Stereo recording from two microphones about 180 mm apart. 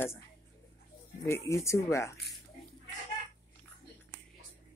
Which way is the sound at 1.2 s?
15° left (ahead or behind).